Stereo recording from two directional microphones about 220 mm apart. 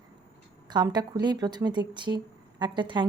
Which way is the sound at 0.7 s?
20° right (ahead or behind).